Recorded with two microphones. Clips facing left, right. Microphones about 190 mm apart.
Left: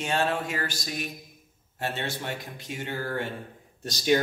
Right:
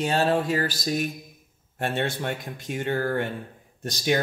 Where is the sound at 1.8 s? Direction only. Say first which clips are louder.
Right 5 dB; 55° right (ahead or behind).